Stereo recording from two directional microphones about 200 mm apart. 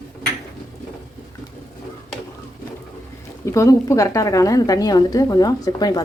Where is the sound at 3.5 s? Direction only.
15° left (ahead or behind).